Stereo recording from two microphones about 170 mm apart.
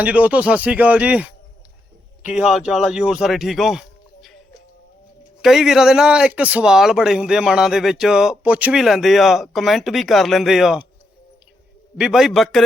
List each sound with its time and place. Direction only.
0.0 s speech: 10° right (ahead or behind)
5.4 s speech: centre (ahead or behind)
11.9 s speech: 5° right (ahead or behind)